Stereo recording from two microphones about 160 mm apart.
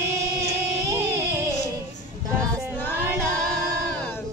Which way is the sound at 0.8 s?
20° right (ahead or behind).